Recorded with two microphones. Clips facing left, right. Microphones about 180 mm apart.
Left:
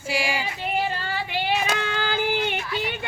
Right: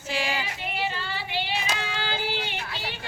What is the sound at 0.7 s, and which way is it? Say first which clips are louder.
Child singing: left 5 dB; 45° left (ahead or behind).